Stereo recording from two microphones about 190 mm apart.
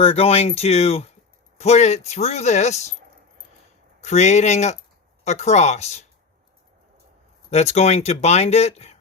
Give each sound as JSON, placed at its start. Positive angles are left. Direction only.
{"t": 0.0, "sound": "speech", "side_deg": 30}
{"t": 4.0, "sound": "speech", "side_deg": 35}
{"t": 7.5, "sound": "speech", "side_deg": 35}